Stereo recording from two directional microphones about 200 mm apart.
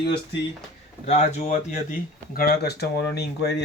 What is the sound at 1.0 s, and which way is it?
Speech, 30° left (ahead or behind).